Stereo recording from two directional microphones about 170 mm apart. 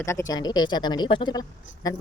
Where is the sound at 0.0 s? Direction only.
15° left (ahead or behind).